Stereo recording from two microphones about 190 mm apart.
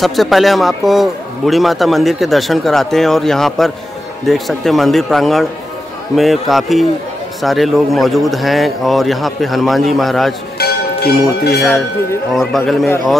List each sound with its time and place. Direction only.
0.0 s a man's voice: centre (ahead or behind)
10.6 s speech: 55° left (ahead or behind)
12.4 s a man's voice: centre (ahead or behind)